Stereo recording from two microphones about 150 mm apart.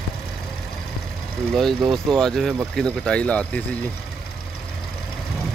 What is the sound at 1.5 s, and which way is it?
Speech, centre (ahead or behind).